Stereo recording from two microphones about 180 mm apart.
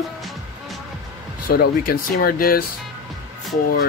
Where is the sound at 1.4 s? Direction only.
55° left (ahead or behind).